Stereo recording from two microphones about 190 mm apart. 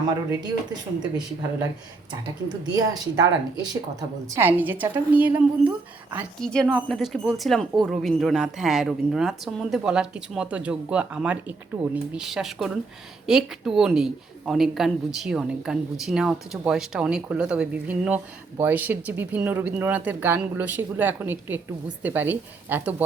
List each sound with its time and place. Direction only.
0.3 s speech: 20° right (ahead or behind)
2.7 s a woman's voice: 20° right (ahead or behind)
6.4 s a woman's voice: 5° left (ahead or behind)